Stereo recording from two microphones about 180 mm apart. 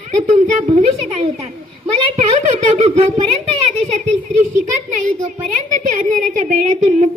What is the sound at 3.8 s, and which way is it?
Speech, 40° right (ahead or behind).